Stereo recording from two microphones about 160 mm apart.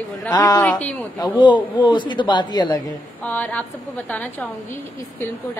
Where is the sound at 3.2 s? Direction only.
10° left (ahead or behind).